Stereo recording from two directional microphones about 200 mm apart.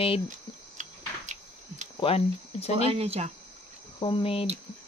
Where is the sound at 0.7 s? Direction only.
35° right (ahead or behind).